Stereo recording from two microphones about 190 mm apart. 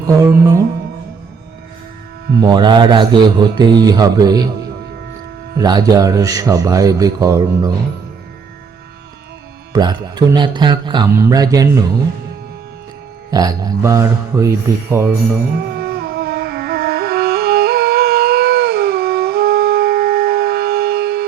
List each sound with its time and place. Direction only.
0.2 s music: 15° right (ahead or behind)
2.4 s a man's voice: 25° right (ahead or behind)
5.5 s a man's voice: 20° right (ahead or behind)
9.7 s a man's voice: 20° right (ahead or behind)
13.3 s music: 20° right (ahead or behind)
15.6 s music: 55° right (ahead or behind)